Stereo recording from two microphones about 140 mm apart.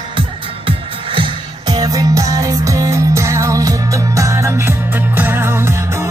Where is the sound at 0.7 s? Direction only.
35° right (ahead or behind).